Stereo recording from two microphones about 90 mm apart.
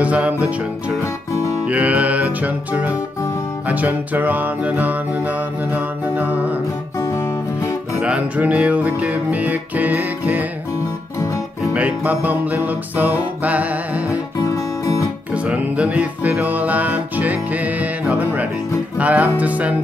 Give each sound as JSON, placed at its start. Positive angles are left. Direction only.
{"t": 0.0, "sound": "music", "side_deg": -15}
{"t": 7.0, "sound": "music", "side_deg": 30}
{"t": 8.0, "sound": "music", "side_deg": -15}
{"t": 11.7, "sound": "music", "side_deg": -15}
{"t": 14.5, "sound": "music", "side_deg": 35}
{"t": 15.3, "sound": "music", "side_deg": -15}